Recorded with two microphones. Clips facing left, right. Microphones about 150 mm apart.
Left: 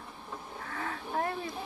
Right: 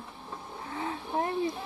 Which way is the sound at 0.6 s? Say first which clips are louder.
Right 3 dB; 20° right (ahead or behind).